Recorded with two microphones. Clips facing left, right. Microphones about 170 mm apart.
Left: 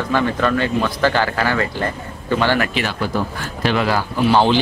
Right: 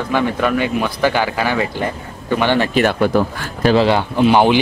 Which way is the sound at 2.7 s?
50° right (ahead or behind).